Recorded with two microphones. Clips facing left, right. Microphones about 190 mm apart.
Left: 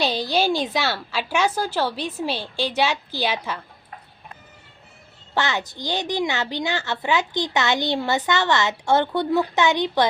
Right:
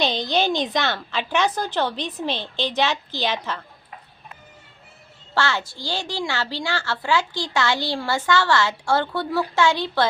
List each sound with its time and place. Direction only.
0.0 s a woman's voice: 10° left (ahead or behind)
5.3 s a child's voice: 20° left (ahead or behind)